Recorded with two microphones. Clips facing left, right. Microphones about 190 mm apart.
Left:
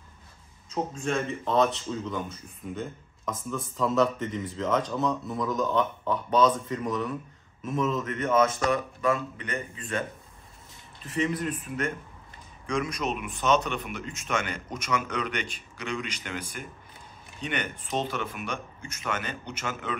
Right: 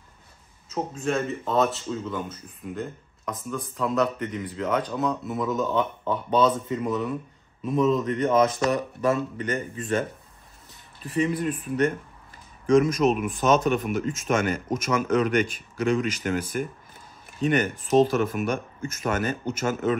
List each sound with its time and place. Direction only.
0.7 s a man's voice: 5° right (ahead or behind)
7.8 s speech: 35° right (ahead or behind)
11.3 s speech: 35° right (ahead or behind)